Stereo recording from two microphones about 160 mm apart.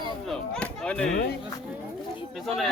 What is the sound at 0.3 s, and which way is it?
Chop, 5° left (ahead or behind).